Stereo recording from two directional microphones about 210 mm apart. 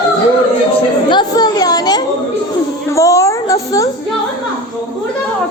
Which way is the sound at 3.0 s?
15° left (ahead or behind).